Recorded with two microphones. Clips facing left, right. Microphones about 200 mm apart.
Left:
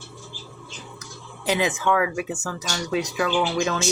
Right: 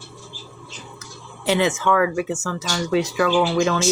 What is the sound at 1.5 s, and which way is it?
Speech, 15° left (ahead or behind).